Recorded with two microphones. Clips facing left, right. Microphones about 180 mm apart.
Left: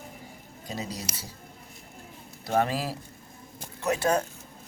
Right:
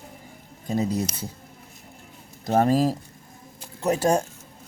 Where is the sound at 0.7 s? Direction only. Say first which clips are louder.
Right 11 dB; 50° right (ahead or behind).